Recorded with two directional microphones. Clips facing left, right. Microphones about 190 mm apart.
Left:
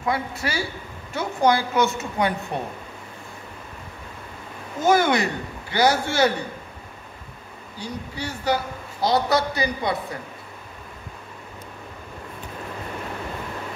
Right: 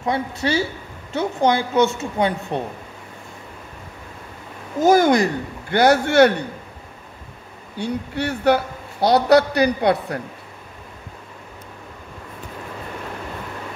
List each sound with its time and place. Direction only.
0.0 s a woman's voice: 25° right (ahead or behind)
4.7 s speech: 40° right (ahead or behind); by 6.3 s 65° right (ahead or behind)
7.7 s a man's voice: 60° right (ahead or behind)